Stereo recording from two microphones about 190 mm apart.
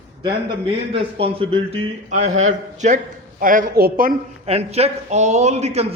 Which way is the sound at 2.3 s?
90° right.